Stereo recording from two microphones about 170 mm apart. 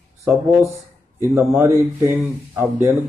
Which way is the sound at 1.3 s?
15° right (ahead or behind).